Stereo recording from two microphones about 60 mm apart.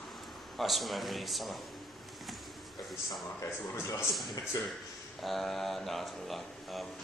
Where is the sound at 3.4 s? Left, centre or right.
Left.